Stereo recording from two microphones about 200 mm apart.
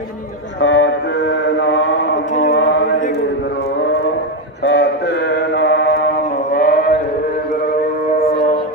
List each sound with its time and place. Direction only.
0.6 s mantra: 60° left (ahead or behind)
2.5 s a sound: 60° left (ahead or behind)
4.6 s mantra: 55° left (ahead or behind)